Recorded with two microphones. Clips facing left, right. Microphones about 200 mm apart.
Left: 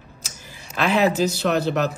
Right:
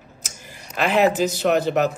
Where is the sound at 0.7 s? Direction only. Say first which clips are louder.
Right 1 dB; 15° right (ahead or behind).